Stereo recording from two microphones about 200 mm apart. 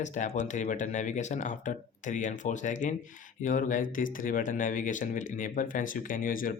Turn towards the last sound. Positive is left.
turn(degrees=45)  # may be behind; listen again after turning